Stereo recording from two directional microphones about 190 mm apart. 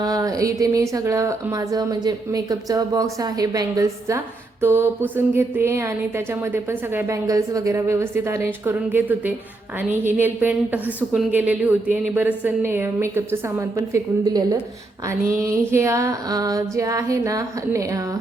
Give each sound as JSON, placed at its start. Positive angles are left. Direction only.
{"t": 0.0, "sound": "speech", "side_deg": -20}